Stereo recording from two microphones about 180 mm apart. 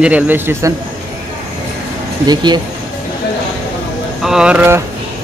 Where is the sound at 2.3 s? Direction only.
25° right (ahead or behind).